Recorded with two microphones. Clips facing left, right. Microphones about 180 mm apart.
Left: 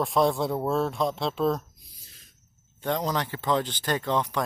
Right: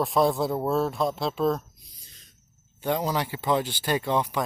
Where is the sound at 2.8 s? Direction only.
10° right (ahead or behind).